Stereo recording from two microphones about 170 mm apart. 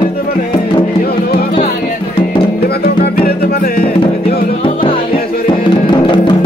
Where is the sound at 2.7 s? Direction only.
65° left (ahead or behind).